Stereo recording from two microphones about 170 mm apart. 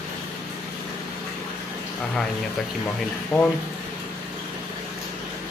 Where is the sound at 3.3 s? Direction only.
20° left (ahead or behind).